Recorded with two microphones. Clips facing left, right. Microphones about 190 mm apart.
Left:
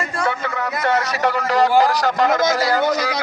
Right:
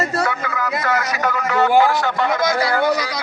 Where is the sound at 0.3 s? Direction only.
30° left (ahead or behind).